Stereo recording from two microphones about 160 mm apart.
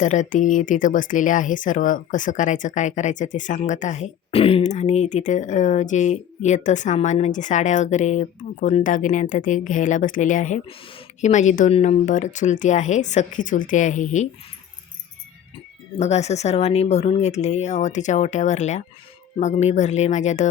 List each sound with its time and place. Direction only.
0.0 s speech: 50° left (ahead or behind)
16.0 s speech: 45° left (ahead or behind)